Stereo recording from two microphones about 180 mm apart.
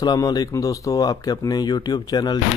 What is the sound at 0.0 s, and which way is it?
Speech, 20° left (ahead or behind).